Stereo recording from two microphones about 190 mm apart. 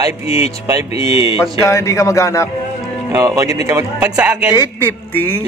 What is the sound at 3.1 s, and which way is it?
A man's voice, 15° right (ahead or behind).